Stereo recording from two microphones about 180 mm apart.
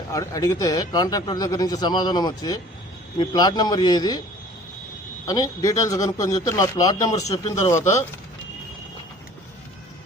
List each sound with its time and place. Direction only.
0.1 s speech: 20° left (ahead or behind)
5.2 s speech: 20° left (ahead or behind)